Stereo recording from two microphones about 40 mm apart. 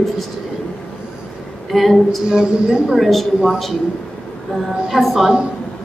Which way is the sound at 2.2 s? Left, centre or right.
Right.